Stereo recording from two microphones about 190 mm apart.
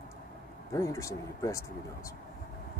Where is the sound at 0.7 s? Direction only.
15° left (ahead or behind).